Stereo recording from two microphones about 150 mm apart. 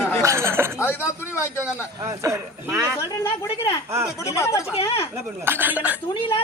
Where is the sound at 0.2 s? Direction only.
20° right (ahead or behind).